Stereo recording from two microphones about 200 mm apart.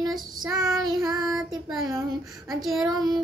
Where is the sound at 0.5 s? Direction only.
Centre (ahead or behind).